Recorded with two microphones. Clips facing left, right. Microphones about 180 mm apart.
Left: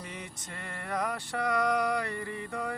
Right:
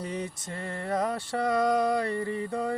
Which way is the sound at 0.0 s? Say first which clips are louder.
Right 9 dB; 30° right (ahead or behind).